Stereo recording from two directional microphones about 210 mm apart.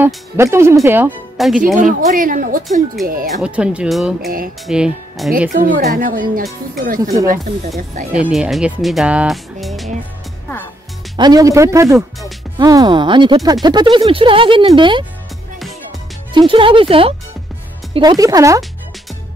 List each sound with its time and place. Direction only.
0.0 s speech: 10° right (ahead or behind)
1.8 s a woman's voice: 40° right (ahead or behind)
3.4 s speech: 5° right (ahead or behind)
5.5 s a woman's voice: 40° right (ahead or behind)
7.0 s speech: 15° right (ahead or behind)
7.2 s a woman's voice: 35° right (ahead or behind)
8.2 s speech: centre (ahead or behind)
11.1 s speech: 20° right (ahead or behind)
16.3 s speech: 25° right (ahead or behind)